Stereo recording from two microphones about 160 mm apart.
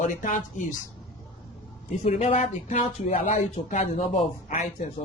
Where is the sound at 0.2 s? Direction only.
55° left (ahead or behind).